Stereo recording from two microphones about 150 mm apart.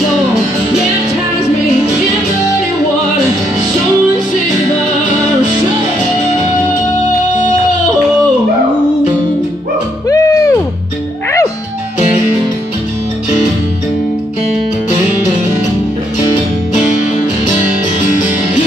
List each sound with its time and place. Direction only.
10.0 s music: 20° left (ahead or behind)